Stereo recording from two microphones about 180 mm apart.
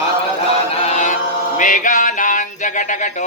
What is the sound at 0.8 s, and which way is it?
Chant, 40° left (ahead or behind).